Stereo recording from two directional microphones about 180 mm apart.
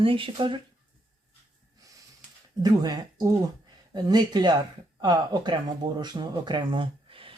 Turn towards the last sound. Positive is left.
turn(degrees=-30)  # may be behind; listen again after turning